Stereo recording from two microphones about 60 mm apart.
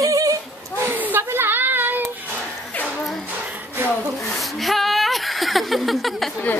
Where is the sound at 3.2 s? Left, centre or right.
Right.